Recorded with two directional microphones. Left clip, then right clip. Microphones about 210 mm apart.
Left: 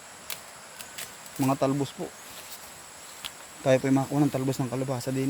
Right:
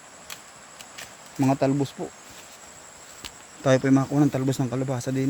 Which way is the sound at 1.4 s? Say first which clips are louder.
Right 3 dB; 30° right (ahead or behind).